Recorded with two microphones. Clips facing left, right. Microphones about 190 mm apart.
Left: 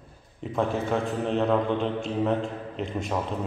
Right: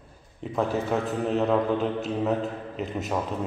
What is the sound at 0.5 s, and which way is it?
A man's voice, centre (ahead or behind).